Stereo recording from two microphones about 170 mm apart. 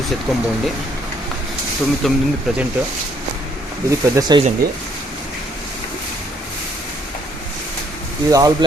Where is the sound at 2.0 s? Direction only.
Centre (ahead or behind).